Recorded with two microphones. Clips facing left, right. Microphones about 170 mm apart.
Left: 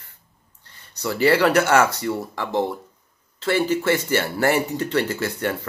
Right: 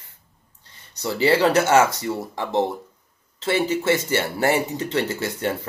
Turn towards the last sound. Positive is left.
turn(degrees=-20)  # may be behind; listen again after turning